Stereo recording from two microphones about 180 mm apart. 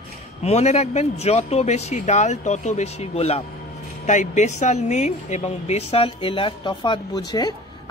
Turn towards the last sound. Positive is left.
turn(degrees=20)  # may be behind; listen again after turning